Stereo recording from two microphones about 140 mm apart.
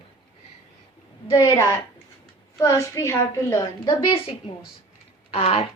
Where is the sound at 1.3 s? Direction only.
25° left (ahead or behind).